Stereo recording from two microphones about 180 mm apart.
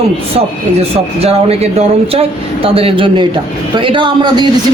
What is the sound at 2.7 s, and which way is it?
A man's voice, 30° right (ahead or behind).